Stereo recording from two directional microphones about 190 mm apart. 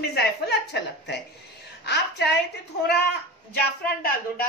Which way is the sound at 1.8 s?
60° left (ahead or behind).